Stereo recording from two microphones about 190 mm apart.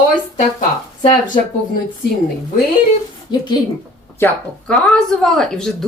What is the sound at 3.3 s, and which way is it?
Speech, 25° left (ahead or behind).